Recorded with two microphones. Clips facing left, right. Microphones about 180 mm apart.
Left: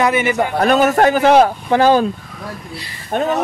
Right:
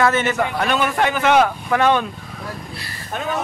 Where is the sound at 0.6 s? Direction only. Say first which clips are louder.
Left 10 dB; 40° left (ahead or behind).